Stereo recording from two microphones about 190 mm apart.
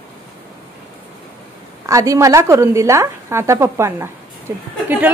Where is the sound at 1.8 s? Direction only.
15° right (ahead or behind).